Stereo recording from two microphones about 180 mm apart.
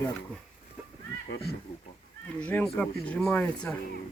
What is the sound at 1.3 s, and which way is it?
Speech, 60° left (ahead or behind).